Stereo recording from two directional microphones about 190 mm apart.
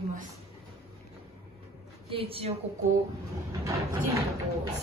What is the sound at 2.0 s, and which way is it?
Speech, 30° right (ahead or behind).